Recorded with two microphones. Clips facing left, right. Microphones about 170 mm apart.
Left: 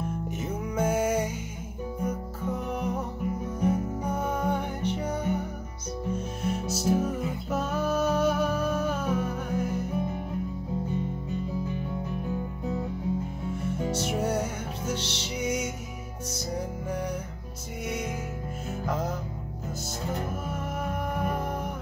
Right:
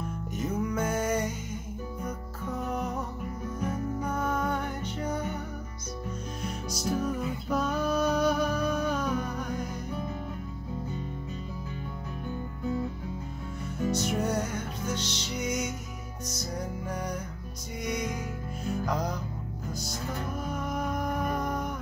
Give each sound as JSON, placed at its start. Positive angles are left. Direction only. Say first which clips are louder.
{"t": 0.3, "sound": "music", "louder": "right 2 dB", "side_deg": 10}
{"t": 2.7, "sound": "music", "louder": "left 1 dB", "side_deg": 10}
{"t": 3.4, "sound": "music", "louder": "left 5 dB", "side_deg": 30}
{"t": 4.0, "sound": "music", "louder": "left 1 dB", "side_deg": 10}
{"t": 6.4, "sound": "music", "louder": "left 6 dB", "side_deg": 5}
{"t": 13.9, "sound": "music", "louder": "left 1 dB", "side_deg": 5}
{"t": 20.4, "sound": "music", "louder": "right 1 dB", "side_deg": 5}